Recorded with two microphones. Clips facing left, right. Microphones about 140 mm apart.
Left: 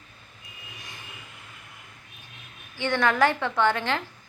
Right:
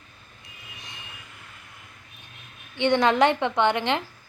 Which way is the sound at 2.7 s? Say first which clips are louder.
Right 4 dB; 20° right (ahead or behind).